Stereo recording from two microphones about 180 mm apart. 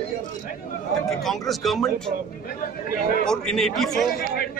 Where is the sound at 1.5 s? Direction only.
Centre (ahead or behind).